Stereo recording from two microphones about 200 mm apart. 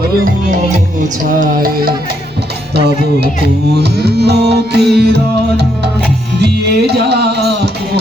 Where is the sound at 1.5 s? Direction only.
45° right (ahead or behind).